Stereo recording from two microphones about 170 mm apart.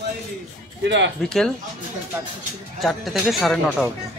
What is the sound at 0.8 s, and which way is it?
Speech, 90° right.